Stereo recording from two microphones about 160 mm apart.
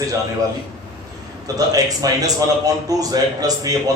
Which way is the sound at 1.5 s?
25° right (ahead or behind).